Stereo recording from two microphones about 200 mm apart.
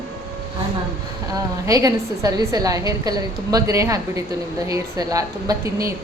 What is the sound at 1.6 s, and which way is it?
A woman's voice, 15° right (ahead or behind).